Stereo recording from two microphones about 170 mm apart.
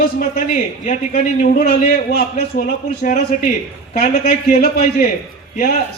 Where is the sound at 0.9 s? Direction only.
50° left (ahead or behind).